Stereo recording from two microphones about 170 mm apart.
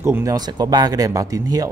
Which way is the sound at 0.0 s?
15° right (ahead or behind).